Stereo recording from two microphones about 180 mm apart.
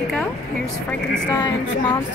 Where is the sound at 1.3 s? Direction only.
25° left (ahead or behind).